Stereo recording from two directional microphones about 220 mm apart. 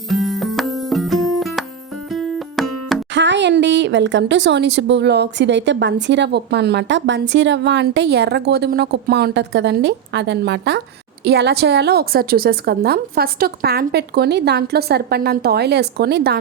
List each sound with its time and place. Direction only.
0.1 s music: centre (ahead or behind)
3.2 s a woman's voice: 55° right (ahead or behind)